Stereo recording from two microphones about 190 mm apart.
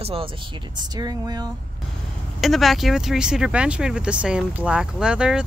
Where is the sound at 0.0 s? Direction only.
30° right (ahead or behind).